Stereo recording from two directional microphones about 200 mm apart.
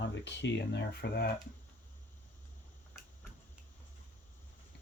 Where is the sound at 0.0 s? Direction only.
60° left (ahead or behind).